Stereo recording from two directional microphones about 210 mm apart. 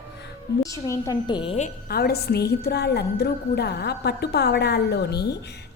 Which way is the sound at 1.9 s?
50° left (ahead or behind).